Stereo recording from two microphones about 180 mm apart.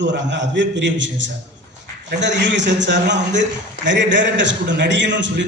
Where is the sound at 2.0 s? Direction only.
80° right.